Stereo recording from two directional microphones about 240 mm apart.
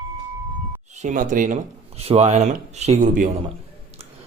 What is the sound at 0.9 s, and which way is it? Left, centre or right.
Speech, right.